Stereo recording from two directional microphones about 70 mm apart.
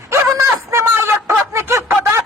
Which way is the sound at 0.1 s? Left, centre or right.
Right.